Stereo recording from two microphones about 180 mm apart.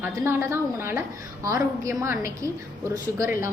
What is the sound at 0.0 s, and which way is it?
A woman's voice, 15° right (ahead or behind).